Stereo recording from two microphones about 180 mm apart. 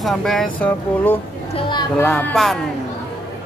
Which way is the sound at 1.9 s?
5° left (ahead or behind).